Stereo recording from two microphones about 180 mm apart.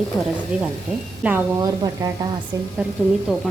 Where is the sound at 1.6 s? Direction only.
20° right (ahead or behind).